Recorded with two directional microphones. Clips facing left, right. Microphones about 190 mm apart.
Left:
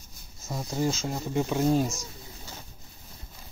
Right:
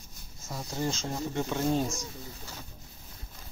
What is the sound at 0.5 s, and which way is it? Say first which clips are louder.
Speech: left 4 dB; 10° left (ahead or behind).